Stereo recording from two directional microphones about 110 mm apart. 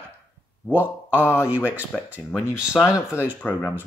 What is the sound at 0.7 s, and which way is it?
Speech, 15° right (ahead or behind).